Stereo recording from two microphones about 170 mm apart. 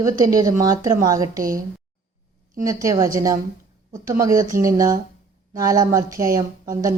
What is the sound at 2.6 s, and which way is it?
A woman's voice, 20° right (ahead or behind).